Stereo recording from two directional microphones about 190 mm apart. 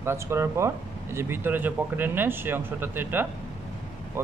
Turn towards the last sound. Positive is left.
turn(degrees=-15)  # may be behind; listen again after turning